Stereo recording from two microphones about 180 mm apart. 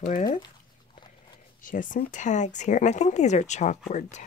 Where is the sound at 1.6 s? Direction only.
45° left (ahead or behind).